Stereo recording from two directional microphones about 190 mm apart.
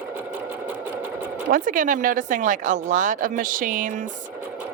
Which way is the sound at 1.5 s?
45° right (ahead or behind).